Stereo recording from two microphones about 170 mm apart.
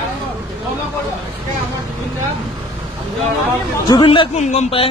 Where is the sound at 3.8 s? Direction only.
30° left (ahead or behind).